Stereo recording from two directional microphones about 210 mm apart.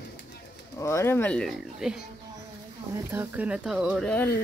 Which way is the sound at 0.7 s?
10° left (ahead or behind).